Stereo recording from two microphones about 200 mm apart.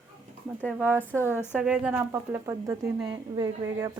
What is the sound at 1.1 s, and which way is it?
Speech, 10° right (ahead or behind).